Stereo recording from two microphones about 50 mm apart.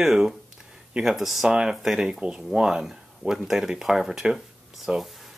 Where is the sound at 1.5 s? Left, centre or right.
Centre.